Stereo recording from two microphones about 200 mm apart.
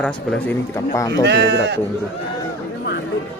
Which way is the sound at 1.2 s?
55° right (ahead or behind).